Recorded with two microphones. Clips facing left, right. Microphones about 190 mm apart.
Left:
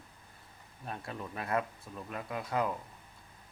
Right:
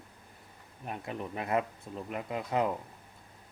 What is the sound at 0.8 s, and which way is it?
Speech, 20° right (ahead or behind).